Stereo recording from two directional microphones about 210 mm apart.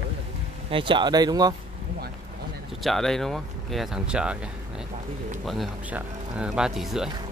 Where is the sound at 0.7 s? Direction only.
25° right (ahead or behind).